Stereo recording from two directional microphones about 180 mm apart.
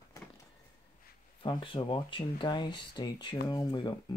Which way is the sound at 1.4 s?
25° left (ahead or behind).